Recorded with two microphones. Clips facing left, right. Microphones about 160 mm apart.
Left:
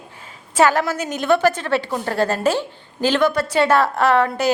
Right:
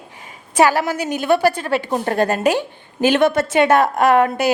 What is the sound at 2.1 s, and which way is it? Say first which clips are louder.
A woman's voice: right 1 dB; 15° right (ahead or behind).